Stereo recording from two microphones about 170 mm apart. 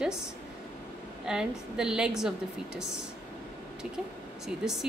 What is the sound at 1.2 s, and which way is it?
A woman's voice, 5° right (ahead or behind).